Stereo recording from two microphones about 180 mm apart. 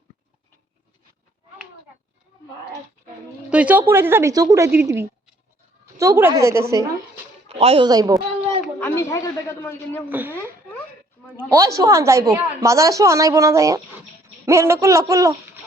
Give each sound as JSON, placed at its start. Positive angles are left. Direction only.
{"t": 3.5, "sound": "a woman's voice", "side_deg": -10}
{"t": 7.4, "sound": "a sound", "side_deg": -30}
{"t": 7.9, "sound": "speech", "side_deg": -20}
{"t": 8.8, "sound": "a man's voice", "side_deg": 15}
{"t": 10.1, "sound": "a woman's voice", "side_deg": -10}
{"t": 11.3, "sound": "a woman's voice", "side_deg": -15}